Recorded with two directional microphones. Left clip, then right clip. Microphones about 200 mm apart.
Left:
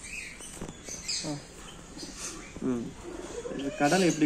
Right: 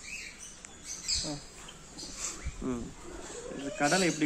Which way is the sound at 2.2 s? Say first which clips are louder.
Left 3 dB; 15° right (ahead or behind).